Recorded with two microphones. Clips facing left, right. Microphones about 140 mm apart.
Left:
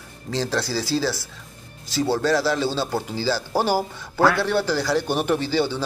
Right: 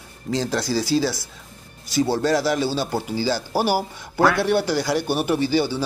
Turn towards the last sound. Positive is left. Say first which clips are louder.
# right 1 dB
turn(degrees=-10)  # may be behind; listen again after turning